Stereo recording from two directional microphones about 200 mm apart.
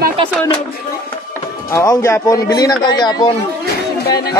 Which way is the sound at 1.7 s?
15° left (ahead or behind).